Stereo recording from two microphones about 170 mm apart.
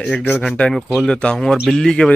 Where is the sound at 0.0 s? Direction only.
5° left (ahead or behind).